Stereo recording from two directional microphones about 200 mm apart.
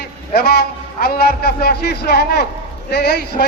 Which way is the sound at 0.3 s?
55° left (ahead or behind).